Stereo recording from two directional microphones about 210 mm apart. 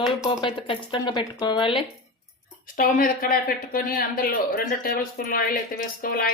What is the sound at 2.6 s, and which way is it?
Speech, 40° left (ahead or behind).